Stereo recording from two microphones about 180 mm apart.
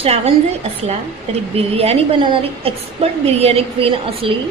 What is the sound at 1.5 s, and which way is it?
A woman's voice, 35° right (ahead or behind).